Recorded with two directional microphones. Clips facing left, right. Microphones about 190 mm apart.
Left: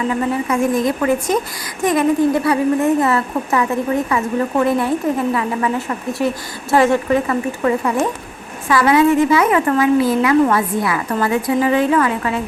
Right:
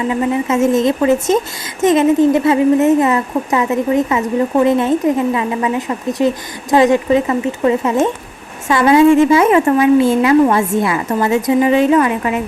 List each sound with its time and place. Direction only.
0.1 s speech: 20° right (ahead or behind)